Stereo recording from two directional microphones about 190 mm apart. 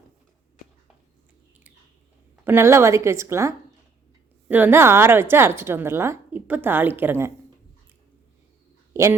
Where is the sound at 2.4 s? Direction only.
15° right (ahead or behind).